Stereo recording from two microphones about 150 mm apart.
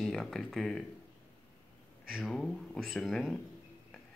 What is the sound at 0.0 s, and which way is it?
Speech, centre (ahead or behind).